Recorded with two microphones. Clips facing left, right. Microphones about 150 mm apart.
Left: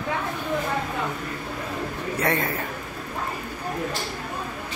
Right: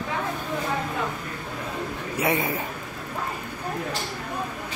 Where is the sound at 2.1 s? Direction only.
10° right (ahead or behind).